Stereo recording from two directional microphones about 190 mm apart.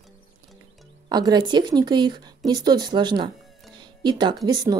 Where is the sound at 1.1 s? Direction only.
20° right (ahead or behind).